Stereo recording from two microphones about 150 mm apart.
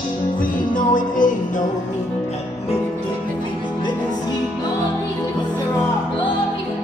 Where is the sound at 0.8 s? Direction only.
60° left (ahead or behind).